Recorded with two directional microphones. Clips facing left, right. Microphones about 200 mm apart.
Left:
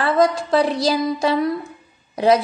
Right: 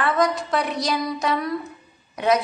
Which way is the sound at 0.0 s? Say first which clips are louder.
Left 4 dB; 30° left (ahead or behind).